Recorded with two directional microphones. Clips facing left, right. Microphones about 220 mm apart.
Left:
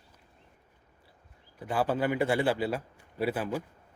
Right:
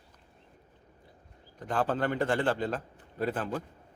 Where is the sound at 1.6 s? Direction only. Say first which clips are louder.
Left 1 dB; 10° left (ahead or behind).